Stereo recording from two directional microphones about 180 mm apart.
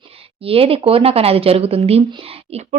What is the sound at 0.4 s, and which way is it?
Speech, 30° right (ahead or behind).